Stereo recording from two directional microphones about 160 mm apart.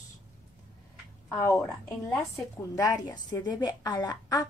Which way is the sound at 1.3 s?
20° left (ahead or behind).